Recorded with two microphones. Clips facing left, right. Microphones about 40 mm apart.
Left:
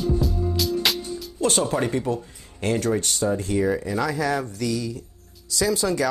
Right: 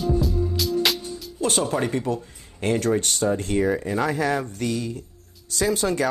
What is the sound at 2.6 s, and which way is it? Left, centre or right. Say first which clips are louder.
Speech: right 1 dB; right.